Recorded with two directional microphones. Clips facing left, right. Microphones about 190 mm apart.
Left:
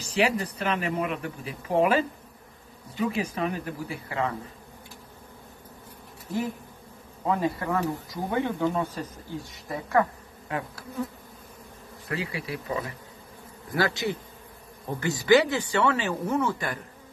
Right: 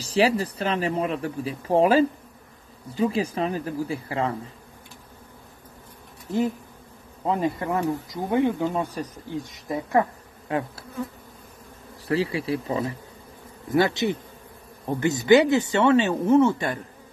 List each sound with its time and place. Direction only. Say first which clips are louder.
0.0 s speech: right 4 dB; 30° right (ahead or behind)
7.2 s speech: right 2 dB; 20° right (ahead or behind)
12.1 s speech: right 8 dB; 30° right (ahead or behind)